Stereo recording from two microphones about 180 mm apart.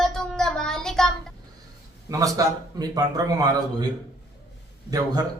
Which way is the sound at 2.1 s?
20° right (ahead or behind).